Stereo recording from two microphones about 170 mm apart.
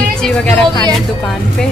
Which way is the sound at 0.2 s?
5° left (ahead or behind).